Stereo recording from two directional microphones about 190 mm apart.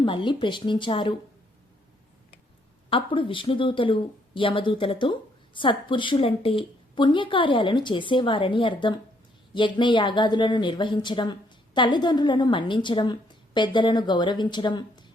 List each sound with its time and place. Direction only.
0.0 s a woman's voice: 25° left (ahead or behind)
2.9 s a woman's voice: 25° left (ahead or behind)